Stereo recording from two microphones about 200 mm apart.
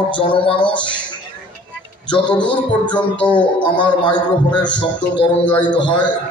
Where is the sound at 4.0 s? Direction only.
20° left (ahead or behind).